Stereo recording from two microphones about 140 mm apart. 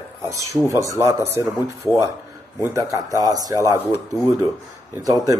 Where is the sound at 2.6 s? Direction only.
20° right (ahead or behind).